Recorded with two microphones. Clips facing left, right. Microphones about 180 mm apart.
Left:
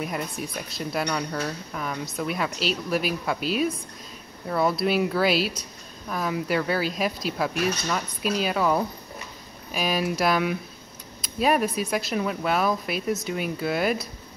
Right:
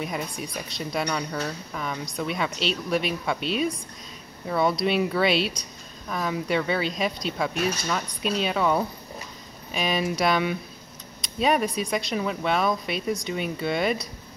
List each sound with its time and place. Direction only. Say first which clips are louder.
0.0 s a woman's voice: left 1 dB; centre (ahead or behind)